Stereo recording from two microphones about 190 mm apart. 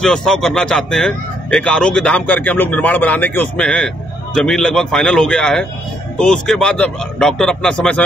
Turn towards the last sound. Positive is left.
turn(degrees=5)  # may be behind; listen again after turning